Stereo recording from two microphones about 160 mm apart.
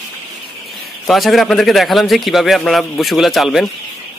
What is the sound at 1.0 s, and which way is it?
A man's voice, centre (ahead or behind).